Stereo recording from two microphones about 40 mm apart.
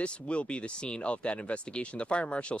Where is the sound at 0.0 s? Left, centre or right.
Left.